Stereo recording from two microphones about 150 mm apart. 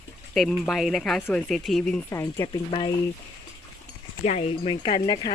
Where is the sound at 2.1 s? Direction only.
20° left (ahead or behind).